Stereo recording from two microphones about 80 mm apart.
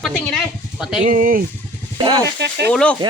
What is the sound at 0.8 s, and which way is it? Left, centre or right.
Speech, centre.